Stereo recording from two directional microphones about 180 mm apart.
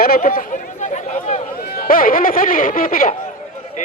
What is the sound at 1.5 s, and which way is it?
A man's voice, 55° left (ahead or behind).